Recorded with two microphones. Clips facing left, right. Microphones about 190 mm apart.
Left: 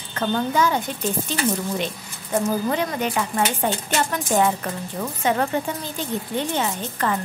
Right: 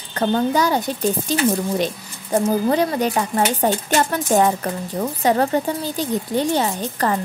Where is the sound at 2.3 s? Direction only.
35° right (ahead or behind).